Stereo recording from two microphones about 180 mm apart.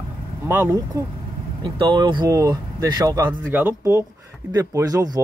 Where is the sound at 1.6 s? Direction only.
25° right (ahead or behind).